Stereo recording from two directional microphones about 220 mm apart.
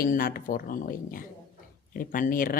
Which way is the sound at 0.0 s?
40° left (ahead or behind).